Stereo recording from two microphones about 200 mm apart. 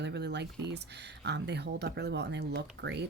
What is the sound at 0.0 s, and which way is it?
A woman's voice, 60° right (ahead or behind).